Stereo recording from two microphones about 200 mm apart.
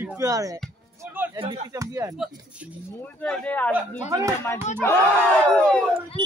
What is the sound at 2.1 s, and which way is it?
Speech, centre (ahead or behind).